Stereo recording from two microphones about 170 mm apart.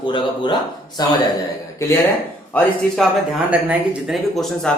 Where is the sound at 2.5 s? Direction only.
5° left (ahead or behind).